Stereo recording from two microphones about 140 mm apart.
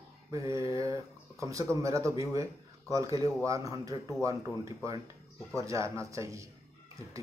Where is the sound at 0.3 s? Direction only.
20° right (ahead or behind).